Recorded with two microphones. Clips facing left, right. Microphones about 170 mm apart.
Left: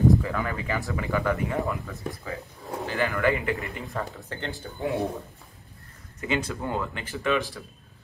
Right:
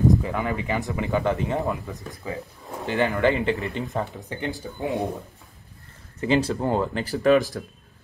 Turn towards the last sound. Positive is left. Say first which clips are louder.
# right 8 dB
turn(degrees=-40)  # may be behind; listen again after turning